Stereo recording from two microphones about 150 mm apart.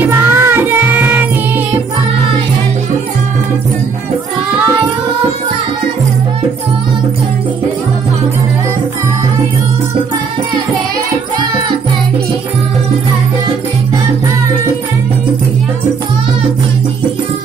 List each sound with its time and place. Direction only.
0.0 s music: 15° right (ahead or behind)